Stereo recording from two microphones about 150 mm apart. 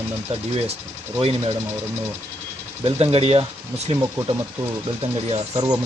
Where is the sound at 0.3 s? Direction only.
40° right (ahead or behind).